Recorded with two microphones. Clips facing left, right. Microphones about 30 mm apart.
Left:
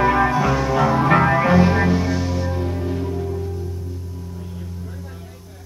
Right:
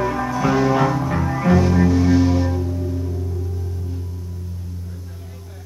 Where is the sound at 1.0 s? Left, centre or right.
Left.